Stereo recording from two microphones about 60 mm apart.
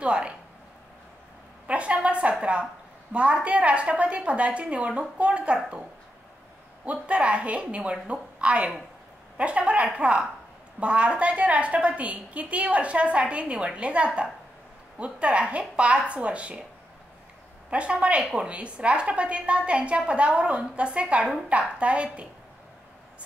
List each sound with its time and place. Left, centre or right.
0.0 s a sound: centre
1.7 s a woman's voice: right
6.8 s a woman's voice: right
17.6 s a woman's voice: centre
21.2 s a woman's voice: centre
21.5 s a woman's voice: centre